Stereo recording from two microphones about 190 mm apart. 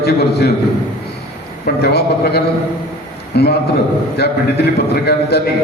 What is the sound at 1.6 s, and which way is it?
A man's voice, 60° left (ahead or behind).